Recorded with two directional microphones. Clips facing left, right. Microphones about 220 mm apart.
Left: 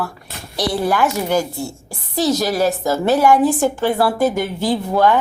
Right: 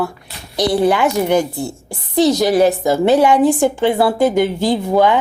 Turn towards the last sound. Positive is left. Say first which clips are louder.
# right 2 dB
turn(degrees=-15)  # may be behind; listen again after turning